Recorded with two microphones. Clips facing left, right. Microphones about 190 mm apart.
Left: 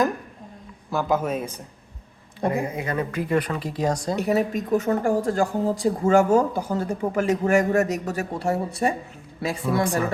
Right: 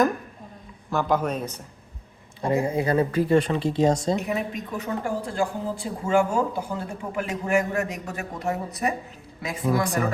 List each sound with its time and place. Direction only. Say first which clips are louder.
0.9 s a man's voice: even; 5° left (ahead or behind)
2.5 s speech: right 5 dB; 30° right (ahead or behind)
4.2 s speech: left 6 dB; 40° left (ahead or behind)